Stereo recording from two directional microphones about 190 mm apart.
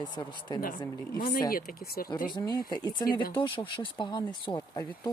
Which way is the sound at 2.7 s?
20° left (ahead or behind).